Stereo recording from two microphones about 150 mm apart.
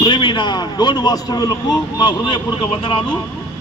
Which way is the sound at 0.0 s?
35° left (ahead or behind).